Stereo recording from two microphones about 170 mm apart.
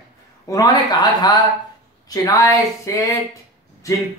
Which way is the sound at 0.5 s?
20° left (ahead or behind).